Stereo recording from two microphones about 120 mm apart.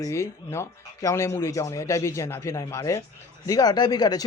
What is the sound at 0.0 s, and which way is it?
A man's voice, 25° left (ahead or behind).